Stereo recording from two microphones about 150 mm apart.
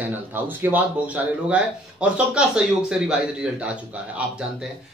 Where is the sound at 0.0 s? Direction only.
15° right (ahead or behind).